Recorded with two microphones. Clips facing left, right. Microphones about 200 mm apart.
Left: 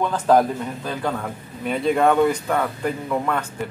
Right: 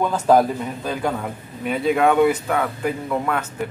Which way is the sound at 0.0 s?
10° right (ahead or behind).